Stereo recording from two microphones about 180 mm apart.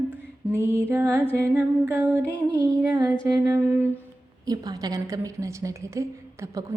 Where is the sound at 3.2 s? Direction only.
20° right (ahead or behind).